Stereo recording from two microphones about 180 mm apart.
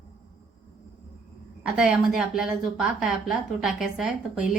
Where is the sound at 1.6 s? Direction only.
5° right (ahead or behind).